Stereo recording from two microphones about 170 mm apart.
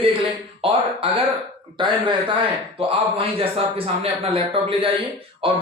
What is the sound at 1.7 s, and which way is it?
A man's voice, 30° right (ahead or behind).